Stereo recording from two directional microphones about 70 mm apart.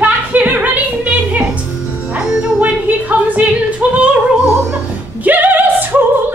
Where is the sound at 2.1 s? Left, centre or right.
Centre.